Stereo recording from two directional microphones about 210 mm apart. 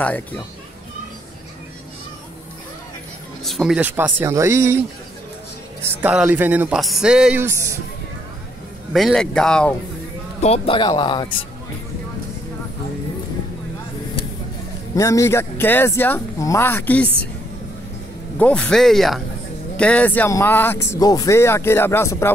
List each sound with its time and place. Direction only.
0.0 s speech: 5° left (ahead or behind)
3.4 s speech: centre (ahead or behind)
8.9 s speech: centre (ahead or behind)
10.4 s speech: 30° left (ahead or behind)
15.0 s speech: 15° left (ahead or behind)
18.4 s speech: 5° left (ahead or behind)